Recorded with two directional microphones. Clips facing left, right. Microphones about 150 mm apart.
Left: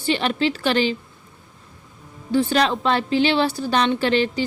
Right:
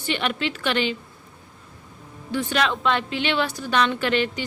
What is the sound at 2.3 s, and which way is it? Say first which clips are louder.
A woman's voice: left 5 dB; 30° left (ahead or behind).